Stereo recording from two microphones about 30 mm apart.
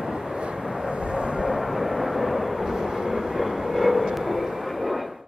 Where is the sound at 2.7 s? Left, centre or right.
Centre.